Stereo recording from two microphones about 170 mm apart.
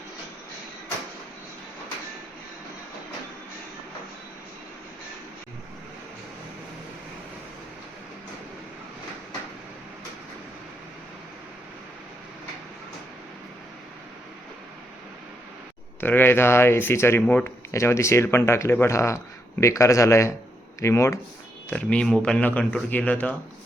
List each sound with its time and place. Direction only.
16.0 s speech: 10° left (ahead or behind)